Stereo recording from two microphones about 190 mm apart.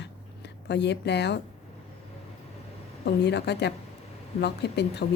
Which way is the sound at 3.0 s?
60° left (ahead or behind).